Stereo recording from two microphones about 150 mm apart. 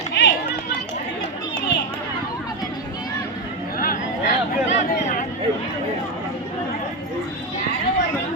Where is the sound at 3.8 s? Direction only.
65° left (ahead or behind).